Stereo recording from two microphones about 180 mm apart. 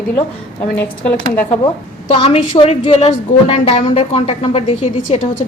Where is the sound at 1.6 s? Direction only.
30° left (ahead or behind).